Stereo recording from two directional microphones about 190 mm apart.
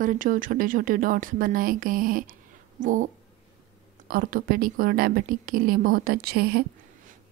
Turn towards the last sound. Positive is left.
turn(degrees=-55)  # may be behind; listen again after turning